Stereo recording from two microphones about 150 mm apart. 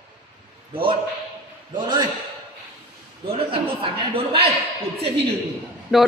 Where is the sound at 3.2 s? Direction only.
40° right (ahead or behind).